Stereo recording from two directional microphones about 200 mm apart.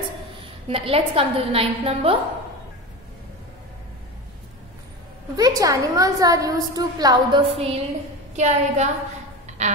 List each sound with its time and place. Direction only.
0.7 s a woman's voice: 30° right (ahead or behind)
5.3 s a woman's voice: 20° right (ahead or behind); by 8.9 s 35° right (ahead or behind)
9.6 s music: 35° right (ahead or behind)